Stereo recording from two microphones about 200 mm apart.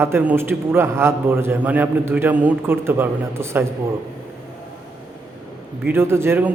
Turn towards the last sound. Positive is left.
turn(degrees=-10)  # may be behind; listen again after turning